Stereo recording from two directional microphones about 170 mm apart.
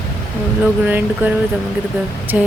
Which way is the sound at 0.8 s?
10° right (ahead or behind).